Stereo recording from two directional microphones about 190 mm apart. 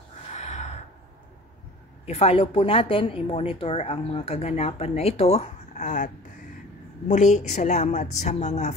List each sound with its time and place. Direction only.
0.3 s gasp: 40° left (ahead or behind)
2.0 s a woman's voice: 30° left (ahead or behind)